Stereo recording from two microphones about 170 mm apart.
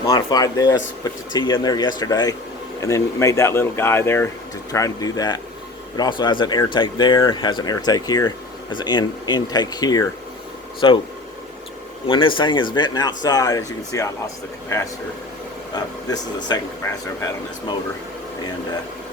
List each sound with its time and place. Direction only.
0.0 s speech: 20° left (ahead or behind)
12.0 s speech: 30° left (ahead or behind)
17.2 s speech: 20° left (ahead or behind)